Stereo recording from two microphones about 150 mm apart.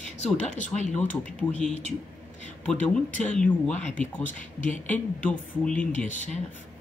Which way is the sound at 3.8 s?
55° left (ahead or behind).